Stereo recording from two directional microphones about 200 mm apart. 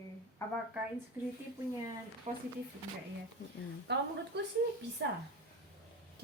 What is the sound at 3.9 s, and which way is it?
A woman's voice, 60° right (ahead or behind).